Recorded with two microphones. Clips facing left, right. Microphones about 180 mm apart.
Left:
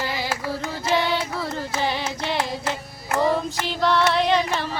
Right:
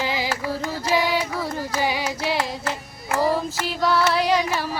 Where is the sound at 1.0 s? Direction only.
10° right (ahead or behind).